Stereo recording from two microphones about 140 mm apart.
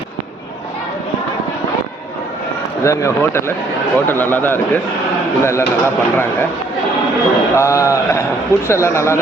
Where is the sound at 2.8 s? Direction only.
20° left (ahead or behind).